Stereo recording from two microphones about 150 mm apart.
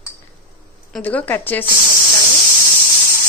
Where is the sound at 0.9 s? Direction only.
10° left (ahead or behind).